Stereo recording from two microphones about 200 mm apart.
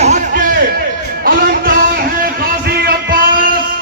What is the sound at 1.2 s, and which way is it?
Music, 45° right (ahead or behind).